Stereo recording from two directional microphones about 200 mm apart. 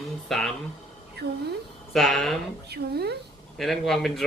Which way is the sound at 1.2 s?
55° right (ahead or behind).